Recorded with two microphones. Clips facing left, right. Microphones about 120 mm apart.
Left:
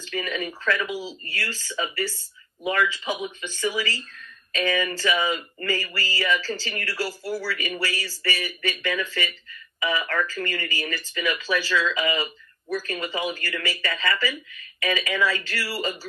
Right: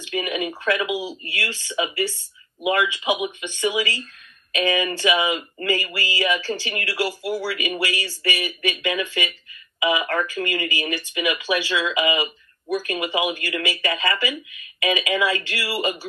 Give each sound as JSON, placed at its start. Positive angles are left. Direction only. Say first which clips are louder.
{"t": 0.0, "sound": "speech", "louder": "right 4 dB", "side_deg": -15}